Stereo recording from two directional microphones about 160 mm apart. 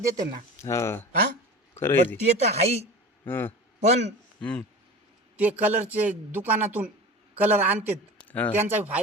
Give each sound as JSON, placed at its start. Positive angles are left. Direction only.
{"t": 0.0, "sound": "speech", "side_deg": -20}
{"t": 0.6, "sound": "speech", "side_deg": 20}
{"t": 2.5, "sound": "a woman's voice", "side_deg": -40}
{"t": 3.2, "sound": "speech", "side_deg": 15}
{"t": 3.8, "sound": "a man's voice", "side_deg": -45}
{"t": 4.4, "sound": "speech", "side_deg": 5}
{"t": 5.4, "sound": "speech", "side_deg": -10}
{"t": 8.3, "sound": "speech", "side_deg": 10}
{"t": 8.5, "sound": "speech", "side_deg": -10}